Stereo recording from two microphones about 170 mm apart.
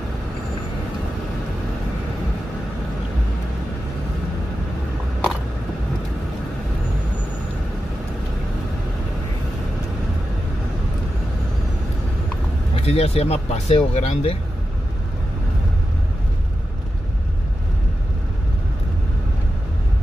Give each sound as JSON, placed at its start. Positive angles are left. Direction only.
{"t": 12.7, "sound": "speech", "side_deg": 35}